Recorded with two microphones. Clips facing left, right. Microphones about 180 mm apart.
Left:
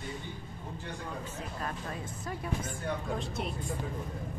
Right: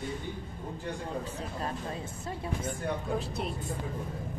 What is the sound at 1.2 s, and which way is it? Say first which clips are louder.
Speech: right 3 dB; 30° right (ahead or behind).